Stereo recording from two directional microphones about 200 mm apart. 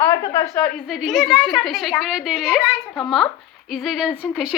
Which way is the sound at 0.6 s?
Centre (ahead or behind).